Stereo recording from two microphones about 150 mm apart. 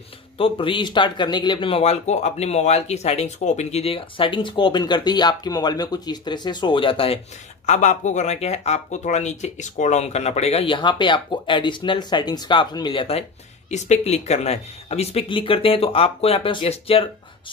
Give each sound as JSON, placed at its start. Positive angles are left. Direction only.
{"t": 0.4, "sound": "a man's voice", "side_deg": 35}
{"t": 7.6, "sound": "speech", "side_deg": 50}
{"t": 13.7, "sound": "a man's voice", "side_deg": 50}